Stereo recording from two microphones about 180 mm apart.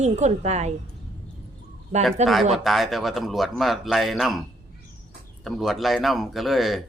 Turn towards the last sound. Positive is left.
turn(degrees=0)  # may be behind; listen again after turning